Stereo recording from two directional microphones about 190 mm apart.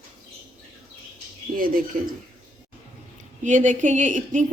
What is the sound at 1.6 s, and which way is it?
Speech, 50° right (ahead or behind).